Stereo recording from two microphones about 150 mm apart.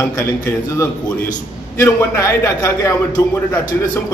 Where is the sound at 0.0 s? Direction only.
15° left (ahead or behind).